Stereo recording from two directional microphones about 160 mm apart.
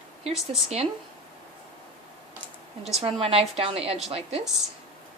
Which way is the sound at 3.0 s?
35° right (ahead or behind).